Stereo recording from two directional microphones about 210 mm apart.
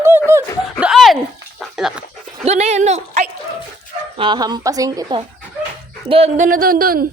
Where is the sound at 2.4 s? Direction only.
30° right (ahead or behind).